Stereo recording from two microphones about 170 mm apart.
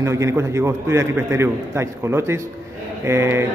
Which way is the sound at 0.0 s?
15° right (ahead or behind).